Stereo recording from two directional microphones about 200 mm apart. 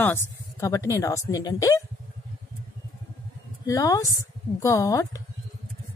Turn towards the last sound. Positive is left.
turn(degrees=15)  # may be behind; listen again after turning